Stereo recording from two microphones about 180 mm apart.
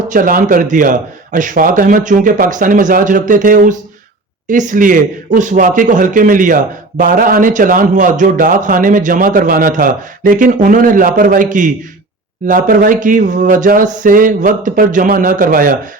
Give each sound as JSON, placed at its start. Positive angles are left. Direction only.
{"t": 0.1, "sound": "a man's voice", "side_deg": -50}